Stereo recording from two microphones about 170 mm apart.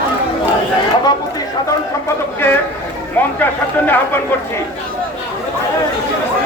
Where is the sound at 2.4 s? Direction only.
10° left (ahead or behind).